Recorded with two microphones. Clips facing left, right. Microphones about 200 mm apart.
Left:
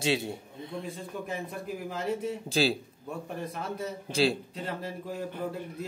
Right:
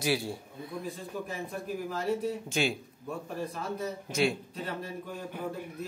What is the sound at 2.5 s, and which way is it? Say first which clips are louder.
Speech: left 5 dB; 35° left (ahead or behind).